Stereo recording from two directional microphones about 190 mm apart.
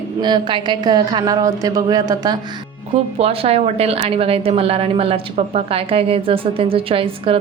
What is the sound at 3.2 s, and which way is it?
A woman's voice, 30° right (ahead or behind).